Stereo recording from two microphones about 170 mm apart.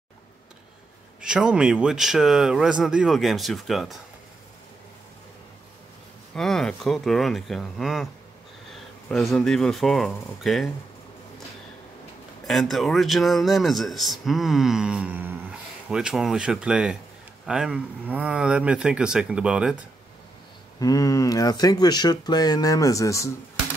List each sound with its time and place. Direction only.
1.2 s speech: 5° right (ahead or behind)
6.3 s speech: 5° left (ahead or behind)
9.1 s speech: 5° left (ahead or behind)
12.4 s speech: centre (ahead or behind)
20.8 s speech: 20° left (ahead or behind)